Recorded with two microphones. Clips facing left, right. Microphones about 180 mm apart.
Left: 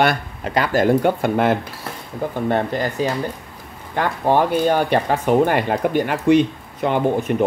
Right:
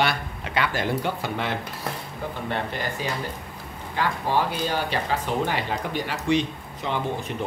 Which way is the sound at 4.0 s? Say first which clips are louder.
Left 7 dB; 55° left (ahead or behind).